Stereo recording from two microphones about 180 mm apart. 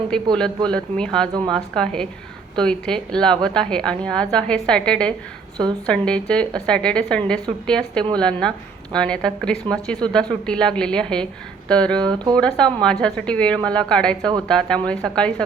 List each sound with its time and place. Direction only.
0.1 s a woman's voice: 5° left (ahead or behind)
12.0 s speech: 25° right (ahead or behind)
12.4 s a woman's voice: 5° left (ahead or behind)